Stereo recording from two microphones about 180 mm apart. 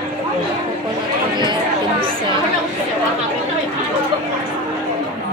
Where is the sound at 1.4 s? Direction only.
25° right (ahead or behind).